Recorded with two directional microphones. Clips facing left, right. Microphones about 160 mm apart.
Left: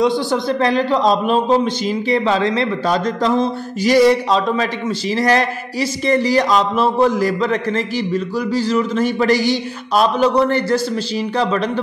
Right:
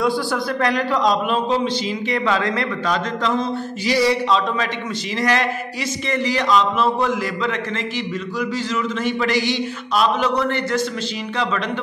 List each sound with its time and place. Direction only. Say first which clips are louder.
0.0 s a man's voice: left 4 dB; 25° left (ahead or behind)